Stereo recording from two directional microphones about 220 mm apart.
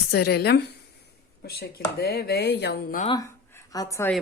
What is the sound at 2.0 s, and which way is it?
Speech, 45° left (ahead or behind).